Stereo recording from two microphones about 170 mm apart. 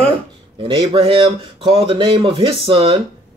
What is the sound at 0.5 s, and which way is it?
Speech, 30° right (ahead or behind).